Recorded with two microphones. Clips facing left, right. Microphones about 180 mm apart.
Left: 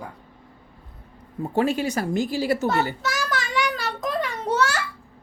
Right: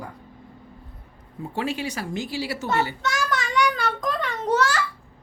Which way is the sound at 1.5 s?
45° left (ahead or behind).